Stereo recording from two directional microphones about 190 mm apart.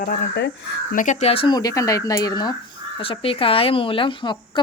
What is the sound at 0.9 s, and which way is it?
Speech, 40° left (ahead or behind).